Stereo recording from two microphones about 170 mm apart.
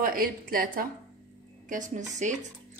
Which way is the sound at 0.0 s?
55° right (ahead or behind).